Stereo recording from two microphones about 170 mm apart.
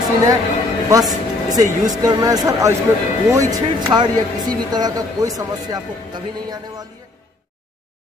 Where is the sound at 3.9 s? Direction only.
25° right (ahead or behind).